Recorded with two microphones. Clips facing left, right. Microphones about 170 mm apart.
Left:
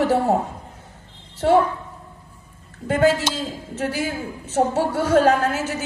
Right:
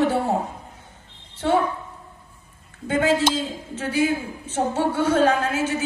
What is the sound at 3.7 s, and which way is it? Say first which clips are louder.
A woman's voice: right 3 dB; 40° left (ahead or behind).